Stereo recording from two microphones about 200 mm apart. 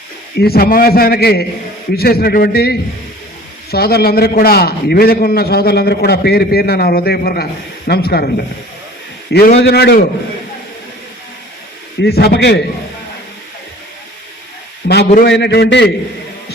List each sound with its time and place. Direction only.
0.3 s a man's voice: 50° left (ahead or behind)
9.6 s a man's voice: 55° left (ahead or behind)
12.0 s a man's voice: 50° left (ahead or behind)
14.8 s a man's voice: 50° left (ahead or behind)